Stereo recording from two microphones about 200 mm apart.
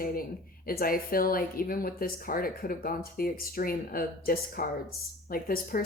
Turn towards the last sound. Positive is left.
turn(degrees=45)  # may be behind; listen again after turning